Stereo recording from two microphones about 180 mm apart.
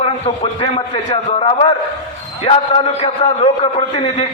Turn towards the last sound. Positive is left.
turn(degrees=30)  # may be behind; listen again after turning